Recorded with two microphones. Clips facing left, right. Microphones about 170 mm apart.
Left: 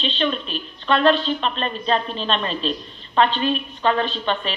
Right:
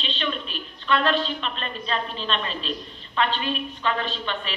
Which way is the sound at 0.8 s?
30° left (ahead or behind).